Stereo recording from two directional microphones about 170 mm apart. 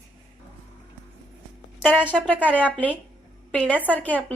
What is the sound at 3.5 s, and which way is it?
Speech, 10° left (ahead or behind).